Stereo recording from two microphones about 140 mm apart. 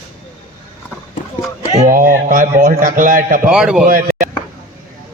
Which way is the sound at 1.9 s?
75° right (ahead or behind).